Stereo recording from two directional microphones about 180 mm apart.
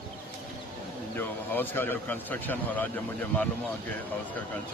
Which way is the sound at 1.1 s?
10° left (ahead or behind).